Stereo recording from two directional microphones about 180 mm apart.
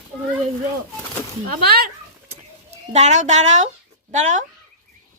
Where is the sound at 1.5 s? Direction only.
60° right (ahead or behind).